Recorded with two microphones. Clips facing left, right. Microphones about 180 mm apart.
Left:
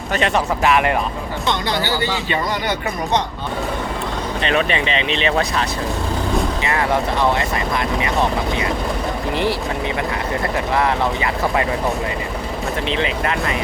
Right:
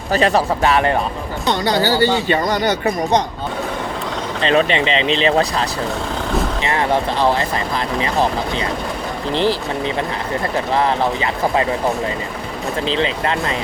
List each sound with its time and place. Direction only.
0.1 s speech: 35° right (ahead or behind)
4.4 s speech: 30° right (ahead or behind)
12.9 s speech: 30° right (ahead or behind)